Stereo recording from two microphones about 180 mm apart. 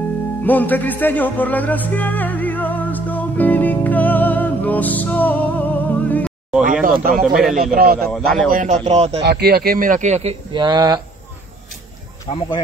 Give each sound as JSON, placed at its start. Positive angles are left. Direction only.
{"t": 0.4, "sound": "music", "side_deg": 10}
{"t": 6.6, "sound": "a man's voice", "side_deg": -50}
{"t": 8.1, "sound": "a man's voice", "side_deg": 5}
{"t": 8.5, "sound": "a man's voice", "side_deg": -45}
{"t": 9.2, "sound": "speech", "side_deg": -60}
{"t": 10.5, "sound": "speech", "side_deg": -25}
{"t": 12.3, "sound": "speech", "side_deg": 25}